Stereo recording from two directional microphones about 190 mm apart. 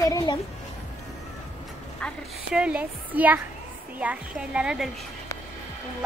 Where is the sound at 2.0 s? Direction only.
5° left (ahead or behind).